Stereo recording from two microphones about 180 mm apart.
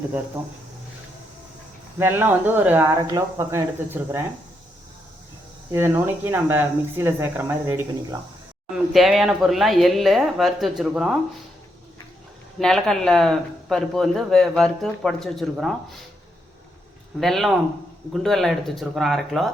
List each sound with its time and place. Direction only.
2.0 s speech: 10° right (ahead or behind)
3.0 s speech: 20° right (ahead or behind)
5.7 s speech: 15° right (ahead or behind)
8.7 s speech: centre (ahead or behind)
12.5 s speech: 5° left (ahead or behind)
17.2 s speech: centre (ahead or behind)